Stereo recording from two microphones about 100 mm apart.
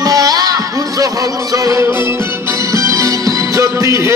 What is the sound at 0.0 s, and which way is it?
Music, 35° right (ahead or behind).